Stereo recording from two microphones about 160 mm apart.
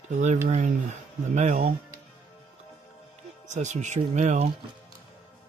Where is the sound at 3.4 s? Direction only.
50° right (ahead or behind).